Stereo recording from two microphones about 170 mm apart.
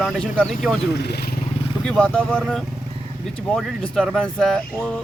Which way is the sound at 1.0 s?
70° left (ahead or behind).